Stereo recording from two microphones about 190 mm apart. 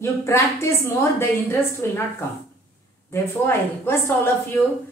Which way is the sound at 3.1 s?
15° left (ahead or behind).